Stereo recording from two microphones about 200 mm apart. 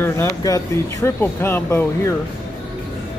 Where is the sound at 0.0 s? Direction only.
15° left (ahead or behind).